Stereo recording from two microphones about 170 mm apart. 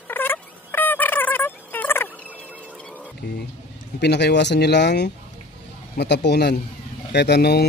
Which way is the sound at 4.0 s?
75° left (ahead or behind).